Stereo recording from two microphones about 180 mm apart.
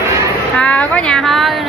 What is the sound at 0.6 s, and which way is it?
Speech, 5° left (ahead or behind).